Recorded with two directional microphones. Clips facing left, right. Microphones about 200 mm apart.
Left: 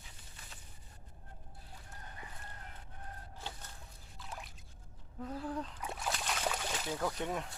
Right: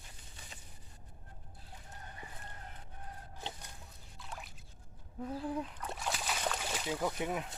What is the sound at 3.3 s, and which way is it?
Chicken, 15° right (ahead or behind).